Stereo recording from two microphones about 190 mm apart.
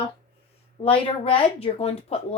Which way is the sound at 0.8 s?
30° left (ahead or behind).